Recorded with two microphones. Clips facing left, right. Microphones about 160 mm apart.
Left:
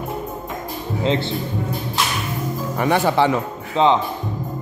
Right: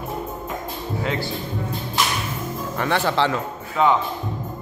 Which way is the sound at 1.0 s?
25° left (ahead or behind).